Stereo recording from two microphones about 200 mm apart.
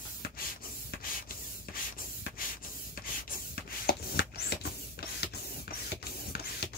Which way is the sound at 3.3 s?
50° left (ahead or behind).